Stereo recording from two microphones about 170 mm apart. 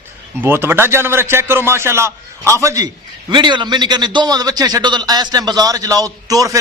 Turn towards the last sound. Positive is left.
turn(degrees=-20)  # may be behind; listen again after turning